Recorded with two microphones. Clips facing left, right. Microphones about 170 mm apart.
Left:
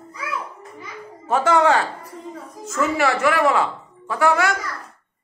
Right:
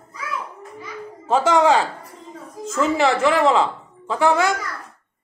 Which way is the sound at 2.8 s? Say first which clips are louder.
Right 2 dB; 20° right (ahead or behind).